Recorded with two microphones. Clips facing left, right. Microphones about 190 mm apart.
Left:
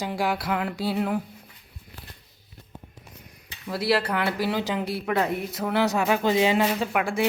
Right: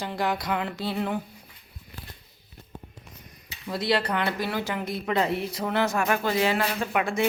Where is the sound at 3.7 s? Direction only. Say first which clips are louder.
Left 1 dB; 5° left (ahead or behind).